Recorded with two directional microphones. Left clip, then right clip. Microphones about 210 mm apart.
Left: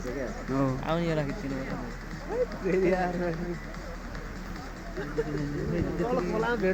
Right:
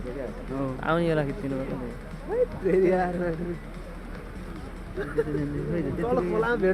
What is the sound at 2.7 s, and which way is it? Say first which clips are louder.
Speech: right 3 dB; 55° right (ahead or behind).